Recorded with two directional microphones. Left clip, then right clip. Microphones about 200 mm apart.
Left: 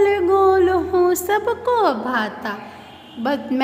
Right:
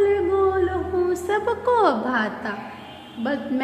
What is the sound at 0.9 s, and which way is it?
A woman's voice, 30° left (ahead or behind).